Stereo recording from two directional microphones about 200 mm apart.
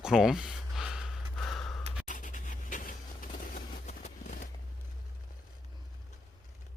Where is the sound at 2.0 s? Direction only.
40° left (ahead or behind).